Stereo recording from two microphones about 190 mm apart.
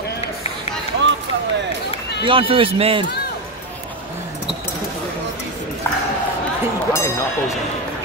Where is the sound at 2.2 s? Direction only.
30° right (ahead or behind).